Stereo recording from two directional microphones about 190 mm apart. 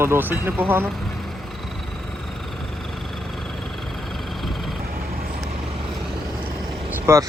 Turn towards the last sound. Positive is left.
turn(degrees=-15)  # may be behind; listen again after turning